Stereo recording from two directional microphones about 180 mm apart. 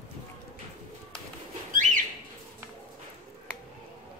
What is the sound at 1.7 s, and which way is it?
Bird, 45° right (ahead or behind).